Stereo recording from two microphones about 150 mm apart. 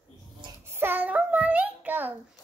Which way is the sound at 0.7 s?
15° right (ahead or behind).